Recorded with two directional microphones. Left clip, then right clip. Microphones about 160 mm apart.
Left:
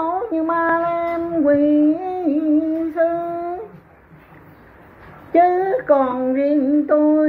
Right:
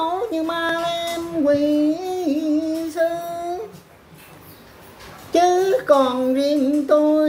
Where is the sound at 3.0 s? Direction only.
25° right (ahead or behind).